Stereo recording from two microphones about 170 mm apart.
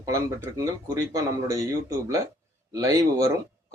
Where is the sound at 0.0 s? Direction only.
20° right (ahead or behind).